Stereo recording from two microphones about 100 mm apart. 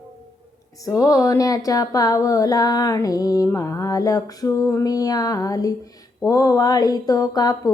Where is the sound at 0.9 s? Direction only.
35° left (ahead or behind).